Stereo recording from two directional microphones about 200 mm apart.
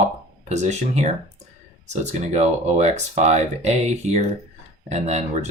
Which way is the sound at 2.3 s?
35° right (ahead or behind).